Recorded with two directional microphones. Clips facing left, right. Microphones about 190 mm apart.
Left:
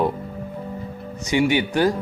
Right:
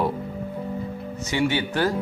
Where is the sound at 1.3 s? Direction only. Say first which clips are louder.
Left 4 dB; 15° left (ahead or behind).